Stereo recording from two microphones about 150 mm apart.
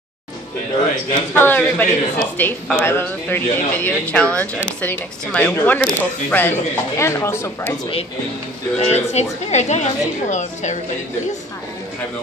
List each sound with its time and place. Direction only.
1.3 s speech: 15° left (ahead or behind)
8.7 s a woman's voice: 50° left (ahead or behind)